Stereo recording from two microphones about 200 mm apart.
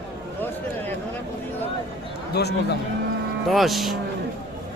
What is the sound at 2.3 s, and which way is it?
Speech, 55° left (ahead or behind).